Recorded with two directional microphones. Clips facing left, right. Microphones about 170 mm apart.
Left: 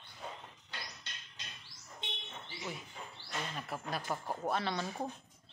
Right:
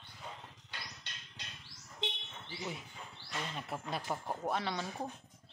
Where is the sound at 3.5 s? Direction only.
20° right (ahead or behind).